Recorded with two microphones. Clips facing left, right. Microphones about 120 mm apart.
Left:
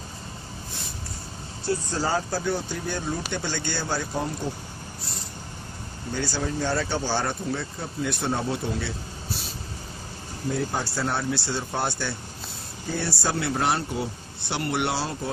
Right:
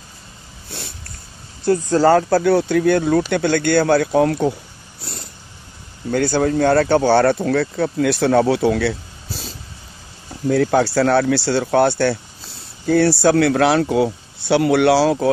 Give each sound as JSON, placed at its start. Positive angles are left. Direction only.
{"t": 1.7, "sound": "speech", "side_deg": -65}
{"t": 6.1, "sound": "speech", "side_deg": -55}
{"t": 10.5, "sound": "speech", "side_deg": -80}